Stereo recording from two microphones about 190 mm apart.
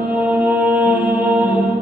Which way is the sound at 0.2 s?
10° right (ahead or behind).